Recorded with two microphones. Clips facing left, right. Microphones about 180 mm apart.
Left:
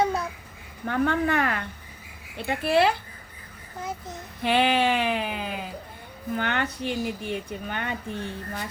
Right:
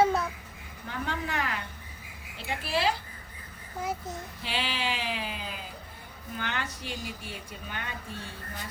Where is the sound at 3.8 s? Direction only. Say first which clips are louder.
Right 1 dB; 10° right (ahead or behind).